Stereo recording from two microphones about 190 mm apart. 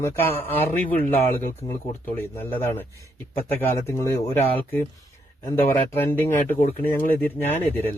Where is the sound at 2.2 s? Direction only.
10° left (ahead or behind).